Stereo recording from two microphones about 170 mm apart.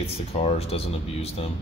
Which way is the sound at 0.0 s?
35° left (ahead or behind).